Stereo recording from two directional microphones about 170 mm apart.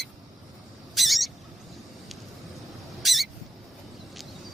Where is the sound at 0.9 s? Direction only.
Centre (ahead or behind).